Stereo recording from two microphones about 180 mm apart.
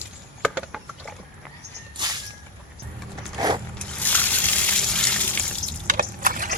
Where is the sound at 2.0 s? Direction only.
25° right (ahead or behind).